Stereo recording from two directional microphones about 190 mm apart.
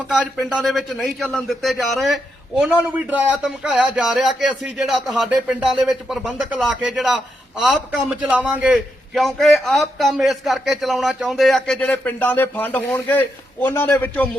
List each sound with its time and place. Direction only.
0.1 s speech: 5° right (ahead or behind)